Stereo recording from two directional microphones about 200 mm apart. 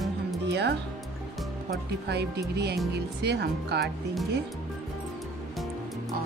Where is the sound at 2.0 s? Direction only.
55° right (ahead or behind).